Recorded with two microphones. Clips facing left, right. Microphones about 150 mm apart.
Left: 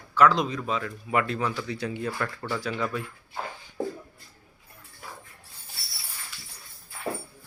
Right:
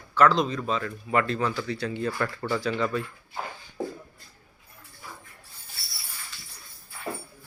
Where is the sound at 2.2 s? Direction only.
Centre (ahead or behind).